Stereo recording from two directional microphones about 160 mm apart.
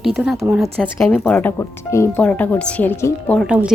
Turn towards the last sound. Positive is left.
turn(degrees=-5)  # may be behind; listen again after turning